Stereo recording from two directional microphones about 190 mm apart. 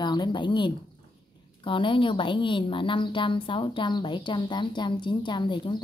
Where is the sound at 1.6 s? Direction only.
25° left (ahead or behind).